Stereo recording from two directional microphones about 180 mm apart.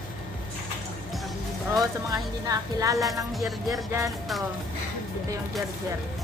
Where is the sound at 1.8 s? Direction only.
20° right (ahead or behind).